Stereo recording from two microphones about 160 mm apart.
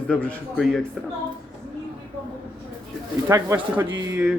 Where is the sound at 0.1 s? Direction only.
10° left (ahead or behind).